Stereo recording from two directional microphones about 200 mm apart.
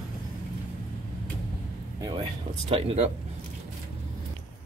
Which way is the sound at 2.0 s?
25° right (ahead or behind).